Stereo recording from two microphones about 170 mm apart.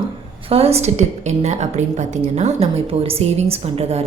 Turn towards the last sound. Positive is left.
turn(degrees=-35)  # may be behind; listen again after turning